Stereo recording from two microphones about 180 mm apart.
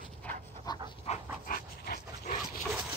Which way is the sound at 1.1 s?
35° left (ahead or behind).